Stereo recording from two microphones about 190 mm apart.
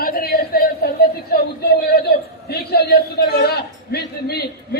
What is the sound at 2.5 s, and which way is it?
A man's voice, 60° left (ahead or behind).